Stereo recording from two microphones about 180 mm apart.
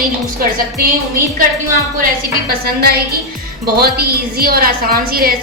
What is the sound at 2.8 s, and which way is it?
A woman's voice, 60° right (ahead or behind).